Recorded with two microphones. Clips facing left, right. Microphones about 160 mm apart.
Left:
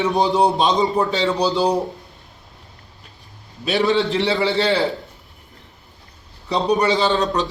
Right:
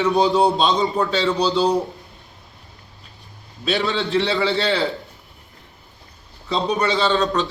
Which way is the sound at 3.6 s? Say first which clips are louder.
Left 4 dB; 20° left (ahead or behind).